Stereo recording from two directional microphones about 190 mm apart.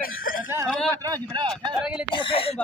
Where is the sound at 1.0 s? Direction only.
20° right (ahead or behind).